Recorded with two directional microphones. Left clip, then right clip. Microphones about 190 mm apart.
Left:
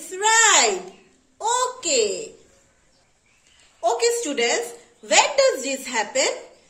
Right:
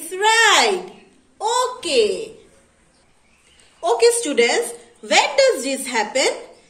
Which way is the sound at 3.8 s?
30° left (ahead or behind).